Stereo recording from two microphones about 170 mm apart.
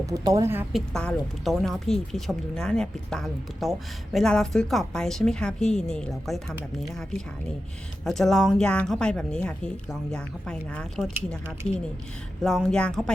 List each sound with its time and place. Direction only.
0.0 s speech: 20° right (ahead or behind)
0.7 s speech: centre (ahead or behind)
8.0 s speech: 5° left (ahead or behind)
12.4 s speech: 5° left (ahead or behind)